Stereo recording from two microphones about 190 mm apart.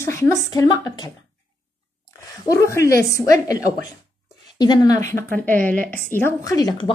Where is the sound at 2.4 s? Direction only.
15° left (ahead or behind).